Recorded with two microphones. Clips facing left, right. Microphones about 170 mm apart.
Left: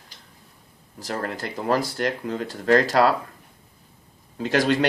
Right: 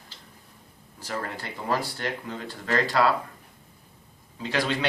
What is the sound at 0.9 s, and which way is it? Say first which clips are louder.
Speech: left 4 dB; 45° left (ahead or behind).